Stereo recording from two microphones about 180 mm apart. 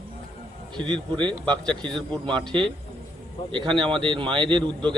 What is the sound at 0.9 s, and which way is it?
Speech, 25° right (ahead or behind).